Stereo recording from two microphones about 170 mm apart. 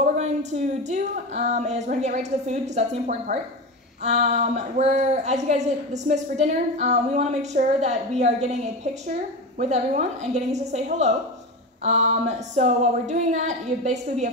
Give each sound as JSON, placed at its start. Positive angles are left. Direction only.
{"t": 0.0, "sound": "a woman's voice", "side_deg": -45}
{"t": 9.6, "sound": "a woman's voice", "side_deg": -40}